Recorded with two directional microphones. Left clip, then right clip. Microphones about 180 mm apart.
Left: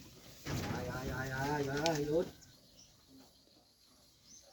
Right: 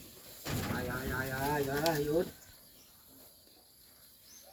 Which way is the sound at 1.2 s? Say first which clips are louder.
Right 3 dB; 15° left (ahead or behind).